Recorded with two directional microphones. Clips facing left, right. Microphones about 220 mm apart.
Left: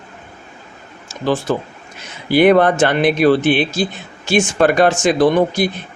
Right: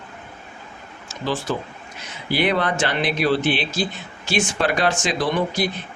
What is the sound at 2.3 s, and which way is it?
Speech, 50° left (ahead or behind).